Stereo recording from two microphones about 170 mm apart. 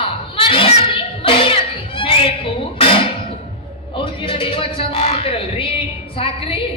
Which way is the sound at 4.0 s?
30° left (ahead or behind).